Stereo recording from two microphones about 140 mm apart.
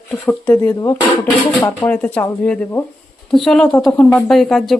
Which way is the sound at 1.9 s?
10° left (ahead or behind).